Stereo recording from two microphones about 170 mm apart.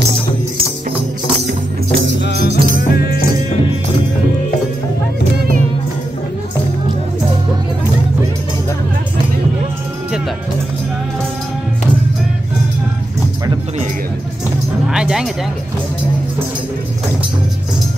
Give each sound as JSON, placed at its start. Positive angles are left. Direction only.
{"t": 2.2, "sound": "music", "side_deg": 70}
{"t": 14.9, "sound": "music", "side_deg": -5}